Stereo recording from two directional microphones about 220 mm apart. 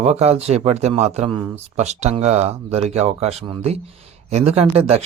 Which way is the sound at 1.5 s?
30° right (ahead or behind).